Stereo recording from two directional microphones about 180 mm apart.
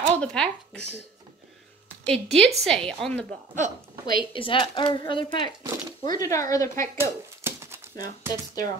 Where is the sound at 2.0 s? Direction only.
Centre (ahead or behind).